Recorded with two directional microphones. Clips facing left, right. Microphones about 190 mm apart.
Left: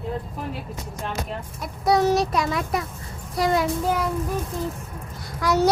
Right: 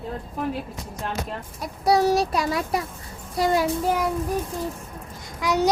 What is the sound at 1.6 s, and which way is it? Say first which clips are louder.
A child's voice: even; 35° right (ahead or behind).